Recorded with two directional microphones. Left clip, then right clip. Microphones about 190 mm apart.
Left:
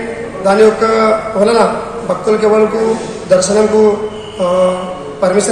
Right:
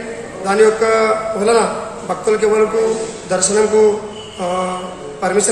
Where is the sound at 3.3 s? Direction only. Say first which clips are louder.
Left 5 dB; centre (ahead or behind).